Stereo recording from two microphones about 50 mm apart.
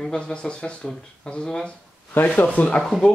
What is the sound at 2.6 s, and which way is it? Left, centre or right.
Speech, left.